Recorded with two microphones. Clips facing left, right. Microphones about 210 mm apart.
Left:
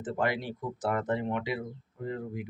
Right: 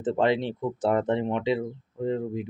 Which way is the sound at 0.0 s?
25° right (ahead or behind).